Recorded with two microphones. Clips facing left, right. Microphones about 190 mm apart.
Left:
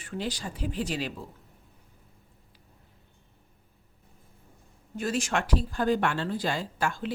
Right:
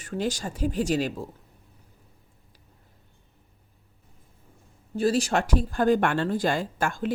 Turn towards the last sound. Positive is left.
turn(degrees=-50)  # may be behind; listen again after turning